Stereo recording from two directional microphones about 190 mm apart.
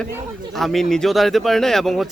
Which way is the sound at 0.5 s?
Centre (ahead or behind).